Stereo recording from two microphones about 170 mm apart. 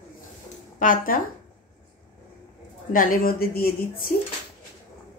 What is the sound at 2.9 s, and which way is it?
A woman's voice, 55° left (ahead or behind).